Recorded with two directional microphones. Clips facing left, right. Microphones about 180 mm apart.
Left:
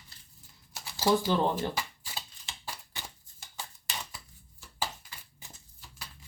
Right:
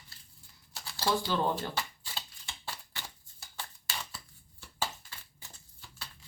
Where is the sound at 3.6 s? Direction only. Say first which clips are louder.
Left 1 dB; 15° left (ahead or behind).